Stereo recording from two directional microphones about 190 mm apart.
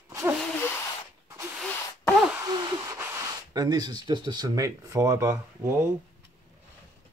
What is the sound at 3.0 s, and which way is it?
Speech, 15° right (ahead or behind).